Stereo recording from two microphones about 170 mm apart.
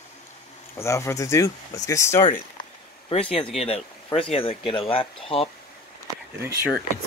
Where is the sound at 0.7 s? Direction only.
15° left (ahead or behind).